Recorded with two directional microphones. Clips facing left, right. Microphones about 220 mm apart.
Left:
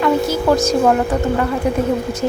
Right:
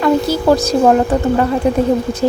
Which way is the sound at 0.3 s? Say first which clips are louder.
Right 2 dB; 35° right (ahead or behind).